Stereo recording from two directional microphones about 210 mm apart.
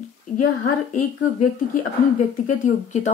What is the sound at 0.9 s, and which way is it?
Speech, 35° left (ahead or behind).